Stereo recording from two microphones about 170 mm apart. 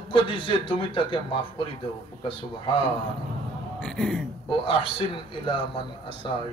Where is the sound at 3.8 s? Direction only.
5° left (ahead or behind).